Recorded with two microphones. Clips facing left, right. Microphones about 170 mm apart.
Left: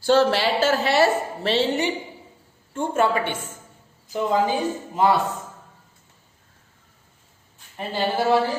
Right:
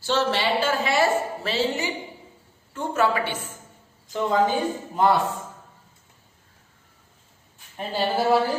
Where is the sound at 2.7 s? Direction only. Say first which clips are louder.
Left 2 dB; 25° left (ahead or behind).